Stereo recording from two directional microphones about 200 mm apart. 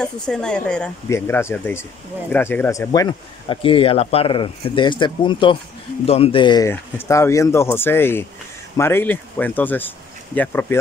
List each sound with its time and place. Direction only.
0.0 s speech: 5° left (ahead or behind)